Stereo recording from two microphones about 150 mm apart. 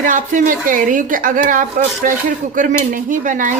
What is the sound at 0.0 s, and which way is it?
Speech, 60° right (ahead or behind).